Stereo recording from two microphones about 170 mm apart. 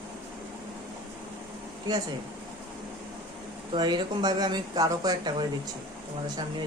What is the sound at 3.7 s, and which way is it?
Speech, 25° right (ahead or behind).